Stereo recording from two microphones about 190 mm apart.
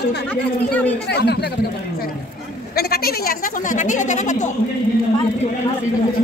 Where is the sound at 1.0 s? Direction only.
60° left (ahead or behind); by 4.6 s 40° left (ahead or behind).